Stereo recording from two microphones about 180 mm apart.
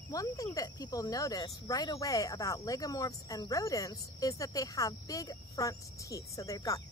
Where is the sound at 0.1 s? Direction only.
20° left (ahead or behind).